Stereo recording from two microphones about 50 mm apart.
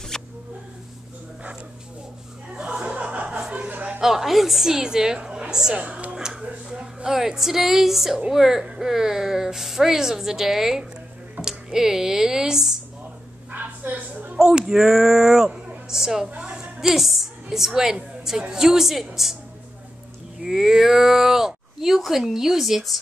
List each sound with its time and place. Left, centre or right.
0.1 s a sound: centre
2.7 s music: centre
3.0 s music: right
3.3 s chuckle: centre
3.6 s a sound: right
4.0 s a woman's voice: centre
5.9 s speech: right
6.7 s a woman's voice: centre
13.5 s a sound: right
14.7 s a woman's voice: centre
16.9 s a woman's voice: centre
20.4 s speech: centre